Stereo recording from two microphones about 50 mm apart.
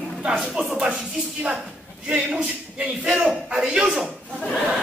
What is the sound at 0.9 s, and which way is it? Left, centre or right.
Music, centre.